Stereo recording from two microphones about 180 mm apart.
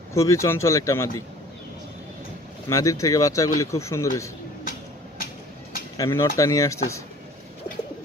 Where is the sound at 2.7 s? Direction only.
20° left (ahead or behind).